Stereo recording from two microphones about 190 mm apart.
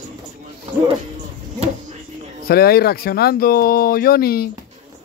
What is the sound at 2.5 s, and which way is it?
Speech, 55° left (ahead or behind).